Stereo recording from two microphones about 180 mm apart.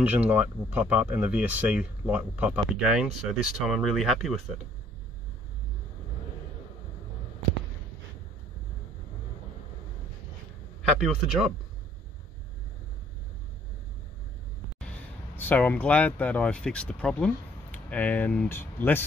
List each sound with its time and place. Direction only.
0.0 s speech: 10° right (ahead or behind)
10.9 s speech: centre (ahead or behind)
15.3 s speech: 10° left (ahead or behind)